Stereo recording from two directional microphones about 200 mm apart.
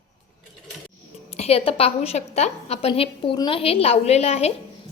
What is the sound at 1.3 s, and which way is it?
A woman's voice, 30° left (ahead or behind).